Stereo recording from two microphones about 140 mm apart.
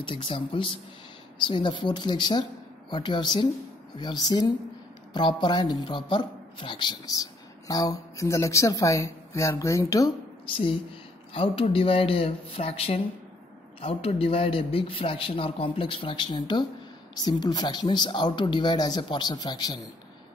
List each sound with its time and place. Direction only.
0.0 s a man's voice: 40° left (ahead or behind); by 10.1 s 25° left (ahead or behind)
10.4 s a man's voice: 40° left (ahead or behind)